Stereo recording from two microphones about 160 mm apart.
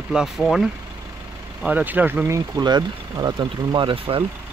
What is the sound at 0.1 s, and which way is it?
Speech, centre (ahead or behind).